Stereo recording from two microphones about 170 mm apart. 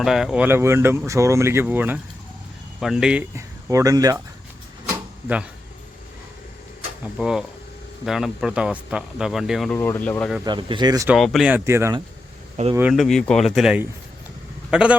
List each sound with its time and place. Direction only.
0.0 s speech: centre (ahead or behind)
3.3 s speech: 20° right (ahead or behind)
7.0 s speech: centre (ahead or behind)
9.7 s speech: 15° left (ahead or behind)
10.4 s speech: 25° right (ahead or behind)
11.1 s speech: centre (ahead or behind)
12.6 s speech: 45° right (ahead or behind)
12.9 s a man's voice: centre (ahead or behind)